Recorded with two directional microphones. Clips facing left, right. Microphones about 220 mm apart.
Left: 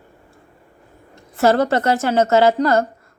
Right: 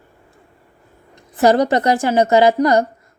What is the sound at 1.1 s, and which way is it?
A woman's voice, 15° right (ahead or behind).